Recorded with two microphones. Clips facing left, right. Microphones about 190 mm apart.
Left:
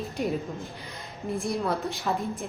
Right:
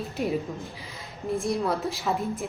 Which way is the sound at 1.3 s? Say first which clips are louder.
Right 2 dB; centre (ahead or behind).